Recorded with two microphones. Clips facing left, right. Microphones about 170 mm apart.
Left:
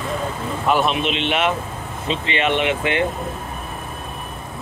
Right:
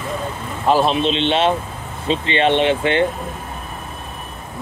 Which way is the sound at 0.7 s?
30° right (ahead or behind).